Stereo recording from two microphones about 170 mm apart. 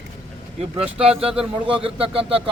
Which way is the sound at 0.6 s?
35° right (ahead or behind).